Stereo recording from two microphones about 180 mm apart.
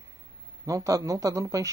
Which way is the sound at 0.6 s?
20° right (ahead or behind).